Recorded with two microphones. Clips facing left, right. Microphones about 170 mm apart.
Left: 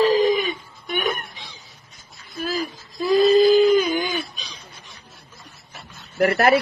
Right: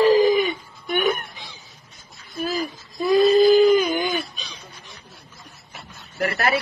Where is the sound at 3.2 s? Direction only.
50° right (ahead or behind).